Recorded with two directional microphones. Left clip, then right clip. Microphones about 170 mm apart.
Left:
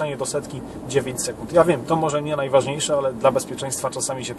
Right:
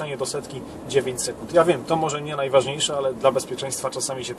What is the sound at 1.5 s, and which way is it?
Speech, 10° left (ahead or behind).